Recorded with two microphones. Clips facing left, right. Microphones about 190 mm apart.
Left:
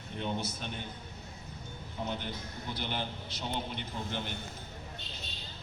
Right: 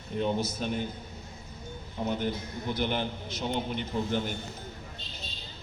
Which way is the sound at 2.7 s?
50° right (ahead or behind).